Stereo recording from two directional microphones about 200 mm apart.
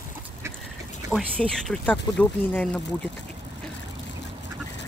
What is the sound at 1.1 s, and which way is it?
Speech, 5° left (ahead or behind).